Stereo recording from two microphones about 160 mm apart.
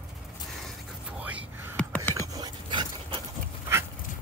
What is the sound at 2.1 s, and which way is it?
Dog, 20° right (ahead or behind).